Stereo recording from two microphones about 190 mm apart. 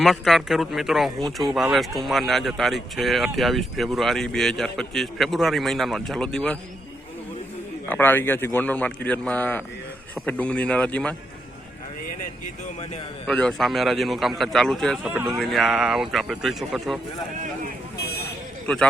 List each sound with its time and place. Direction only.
0.0 s speech: centre (ahead or behind)
7.9 s speech: 10° left (ahead or behind)
13.2 s speech: 5° left (ahead or behind)
15.1 s speech: 10° right (ahead or behind)
15.4 s speech: centre (ahead or behind)
17.9 s vehicle: 60° left (ahead or behind)